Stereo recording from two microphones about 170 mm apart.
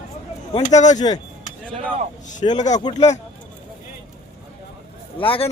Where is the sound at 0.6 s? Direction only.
45° left (ahead or behind).